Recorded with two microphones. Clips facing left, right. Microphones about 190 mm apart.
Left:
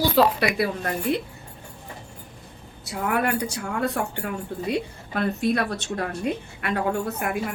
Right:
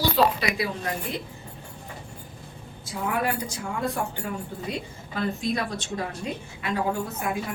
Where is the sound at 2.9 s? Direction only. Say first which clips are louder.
Left 3 dB; 65° left (ahead or behind).